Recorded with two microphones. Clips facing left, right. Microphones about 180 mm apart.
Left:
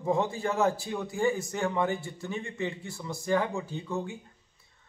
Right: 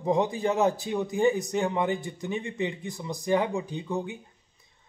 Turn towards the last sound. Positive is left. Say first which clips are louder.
# right 2 dB
turn(degrees=-15)  # may be behind; listen again after turning